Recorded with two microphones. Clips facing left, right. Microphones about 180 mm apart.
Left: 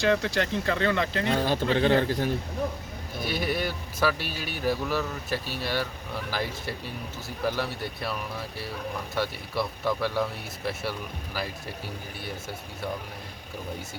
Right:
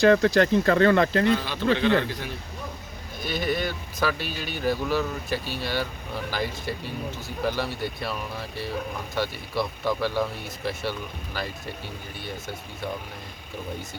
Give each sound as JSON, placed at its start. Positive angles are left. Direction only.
{"t": 0.0, "sound": "speech", "side_deg": -45}
{"t": 1.3, "sound": "a man's voice", "side_deg": 45}
{"t": 3.2, "sound": "speech", "side_deg": 5}